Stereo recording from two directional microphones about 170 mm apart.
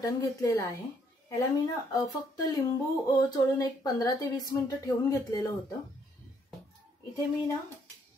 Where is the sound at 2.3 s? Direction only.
25° left (ahead or behind).